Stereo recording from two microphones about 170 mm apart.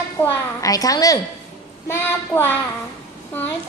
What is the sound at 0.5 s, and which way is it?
A woman's voice, 20° left (ahead or behind).